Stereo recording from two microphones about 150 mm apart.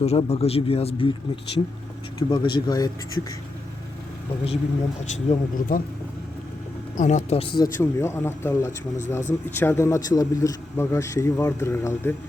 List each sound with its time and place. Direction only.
0.0 s speech: 45° left (ahead or behind)
2.1 s speech: 30° left (ahead or behind)
5.1 s speech: 55° left (ahead or behind)
6.9 s speech: 55° left (ahead or behind); by 7.6 s 40° left (ahead or behind)
7.6 s speech: 20° left (ahead or behind)